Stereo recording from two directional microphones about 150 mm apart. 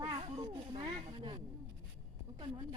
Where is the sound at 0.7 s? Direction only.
30° right (ahead or behind).